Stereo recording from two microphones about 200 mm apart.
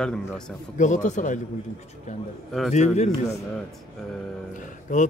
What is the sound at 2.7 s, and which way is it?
Speech, 35° left (ahead or behind).